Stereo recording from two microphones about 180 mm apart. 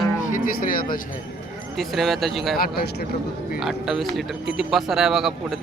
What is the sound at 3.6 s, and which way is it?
Speech, centre (ahead or behind).